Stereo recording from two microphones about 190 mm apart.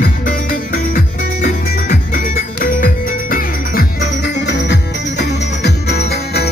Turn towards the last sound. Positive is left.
turn(degrees=60)  # may be behind; listen again after turning